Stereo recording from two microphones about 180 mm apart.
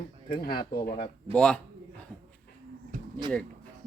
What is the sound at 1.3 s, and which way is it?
Speech, 5° left (ahead or behind).